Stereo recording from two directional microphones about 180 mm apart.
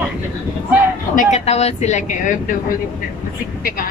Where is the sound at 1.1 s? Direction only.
40° left (ahead or behind).